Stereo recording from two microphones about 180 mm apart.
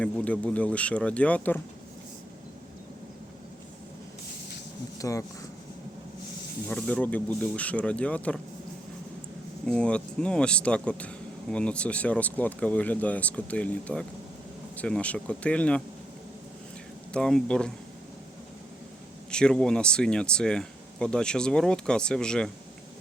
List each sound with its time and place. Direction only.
0.0 s speech: 5° left (ahead or behind)
4.9 s speech: 20° left (ahead or behind)
6.7 s speech: 10° left (ahead or behind)
9.6 s speech: 5° left (ahead or behind)
17.1 s speech: 5° left (ahead or behind)
19.3 s speech: 5° left (ahead or behind)